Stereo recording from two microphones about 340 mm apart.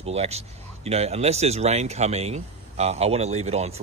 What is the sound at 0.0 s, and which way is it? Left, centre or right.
Speech, centre.